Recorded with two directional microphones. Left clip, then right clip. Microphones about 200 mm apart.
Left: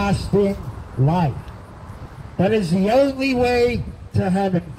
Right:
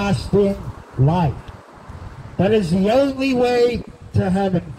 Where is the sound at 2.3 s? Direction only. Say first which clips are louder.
Right 2 dB; 10° left (ahead or behind).